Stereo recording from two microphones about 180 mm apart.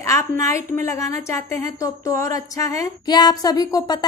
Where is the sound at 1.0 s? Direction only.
15° left (ahead or behind).